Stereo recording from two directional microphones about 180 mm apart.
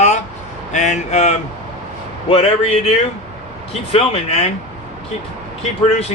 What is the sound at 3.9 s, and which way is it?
Speech, 35° left (ahead or behind).